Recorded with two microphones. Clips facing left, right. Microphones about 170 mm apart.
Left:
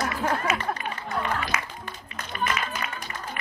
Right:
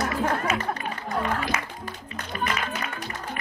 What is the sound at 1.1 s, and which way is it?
Music, 35° right (ahead or behind).